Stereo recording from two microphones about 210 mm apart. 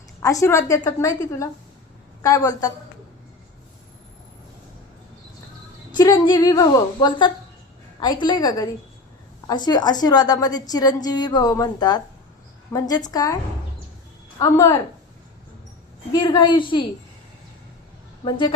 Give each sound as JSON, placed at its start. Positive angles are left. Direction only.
{"t": 0.2, "sound": "a woman's voice", "side_deg": 15}
{"t": 5.9, "sound": "a woman's voice", "side_deg": 20}
{"t": 16.1, "sound": "a woman's voice", "side_deg": 20}
{"t": 18.3, "sound": "a woman's voice", "side_deg": 20}